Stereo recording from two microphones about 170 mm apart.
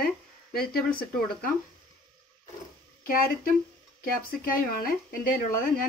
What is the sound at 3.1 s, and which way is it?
Dishes, 55° left (ahead or behind).